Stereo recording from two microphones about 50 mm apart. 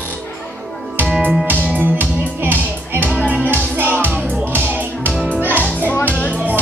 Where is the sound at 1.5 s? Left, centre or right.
Right.